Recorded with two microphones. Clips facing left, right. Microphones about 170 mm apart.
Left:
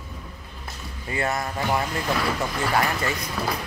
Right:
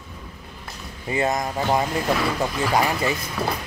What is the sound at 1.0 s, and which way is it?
Speech, 20° right (ahead or behind).